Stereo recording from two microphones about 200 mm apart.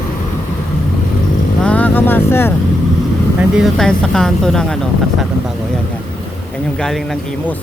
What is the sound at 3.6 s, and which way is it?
Speech, 5° left (ahead or behind).